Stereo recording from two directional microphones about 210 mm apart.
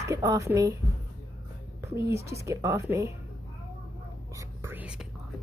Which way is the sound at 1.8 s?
15° right (ahead or behind).